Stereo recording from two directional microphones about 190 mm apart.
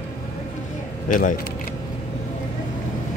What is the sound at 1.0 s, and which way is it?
Speech, 45° left (ahead or behind).